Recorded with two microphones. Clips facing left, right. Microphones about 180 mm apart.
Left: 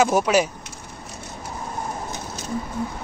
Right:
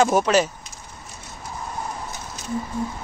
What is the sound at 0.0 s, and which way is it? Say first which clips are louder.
Speech: even; 10° left (ahead or behind).